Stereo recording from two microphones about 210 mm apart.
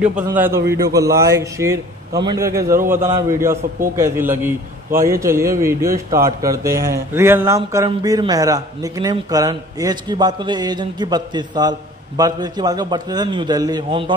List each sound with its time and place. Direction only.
0.0 s a man's voice: 5° right (ahead or behind)
0.6 s a man's voice: 50° right (ahead or behind)
0.9 s a man's voice: 15° right (ahead or behind)